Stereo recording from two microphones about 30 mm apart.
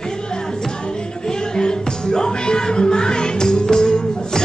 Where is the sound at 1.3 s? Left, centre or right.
Left.